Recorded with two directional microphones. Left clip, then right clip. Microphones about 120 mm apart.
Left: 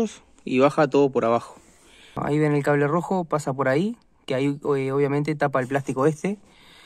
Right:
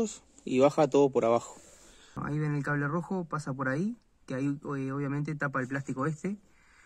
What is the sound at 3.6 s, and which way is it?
Speech, 80° left.